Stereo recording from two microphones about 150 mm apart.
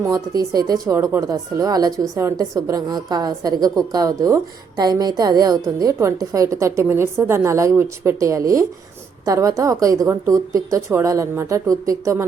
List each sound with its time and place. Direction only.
0.0 s speech: 25° right (ahead or behind)